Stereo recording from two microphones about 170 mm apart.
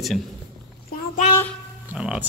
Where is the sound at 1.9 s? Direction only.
5° right (ahead or behind).